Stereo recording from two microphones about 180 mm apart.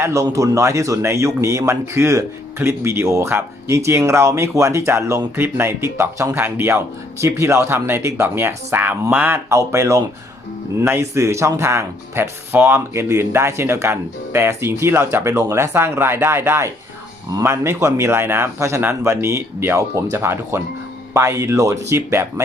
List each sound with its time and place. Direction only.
0.0 s speech: 15° right (ahead or behind)